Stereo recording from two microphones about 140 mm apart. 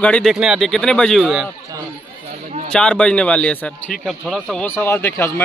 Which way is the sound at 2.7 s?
5° left (ahead or behind).